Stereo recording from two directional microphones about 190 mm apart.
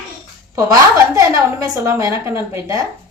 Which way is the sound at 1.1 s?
20° right (ahead or behind).